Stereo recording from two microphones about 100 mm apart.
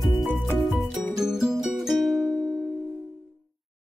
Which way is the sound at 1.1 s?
5° right (ahead or behind).